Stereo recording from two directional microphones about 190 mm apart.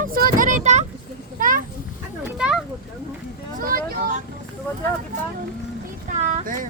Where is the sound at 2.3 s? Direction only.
5° right (ahead or behind).